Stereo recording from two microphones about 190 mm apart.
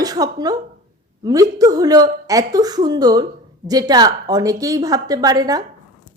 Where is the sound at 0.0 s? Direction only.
20° right (ahead or behind).